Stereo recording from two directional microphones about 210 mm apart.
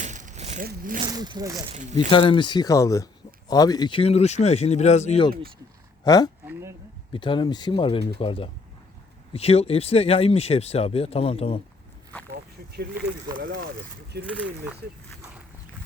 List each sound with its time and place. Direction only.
0.0 s vehicle: 35° right (ahead or behind)
0.7 s speech: 40° right (ahead or behind)
1.0 s speech: 20° right (ahead or behind)
1.7 s speech: 35° right (ahead or behind)
2.0 s speech: 25° left (ahead or behind)
6.1 s speech: 20° left (ahead or behind)
6.5 s a sound: 10° right (ahead or behind)
7.1 s speech: 25° left (ahead or behind)
12.7 s speech: 50° right (ahead or behind)